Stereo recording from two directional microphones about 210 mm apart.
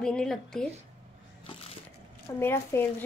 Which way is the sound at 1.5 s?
30° left (ahead or behind).